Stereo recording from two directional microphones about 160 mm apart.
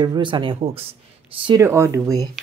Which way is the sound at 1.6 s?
15° right (ahead or behind).